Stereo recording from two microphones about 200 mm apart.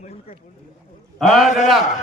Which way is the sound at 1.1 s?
Centre (ahead or behind).